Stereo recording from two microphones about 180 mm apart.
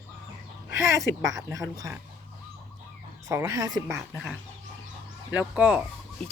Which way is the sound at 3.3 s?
15° right (ahead or behind).